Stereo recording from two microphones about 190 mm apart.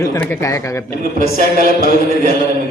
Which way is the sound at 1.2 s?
45° right (ahead or behind).